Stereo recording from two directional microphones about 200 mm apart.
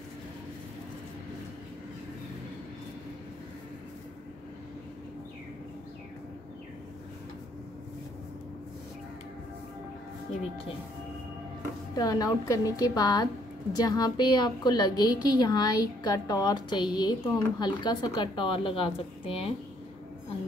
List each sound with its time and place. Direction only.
11.9 s a woman's voice: 20° left (ahead or behind)